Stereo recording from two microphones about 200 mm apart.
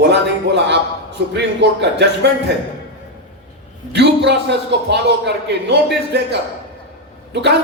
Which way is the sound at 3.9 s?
60° right (ahead or behind).